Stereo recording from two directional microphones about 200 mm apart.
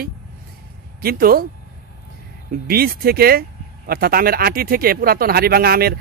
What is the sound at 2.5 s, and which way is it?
Speech, 45° right (ahead or behind).